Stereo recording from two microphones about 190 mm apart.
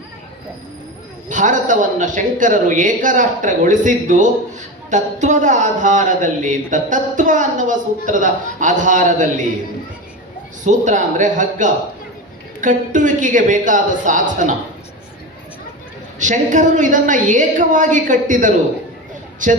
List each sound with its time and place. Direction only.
1.3 s speech: 40° right (ahead or behind)
10.6 s a man's voice: 40° right (ahead or behind)
16.1 s a man's voice: 40° right (ahead or behind)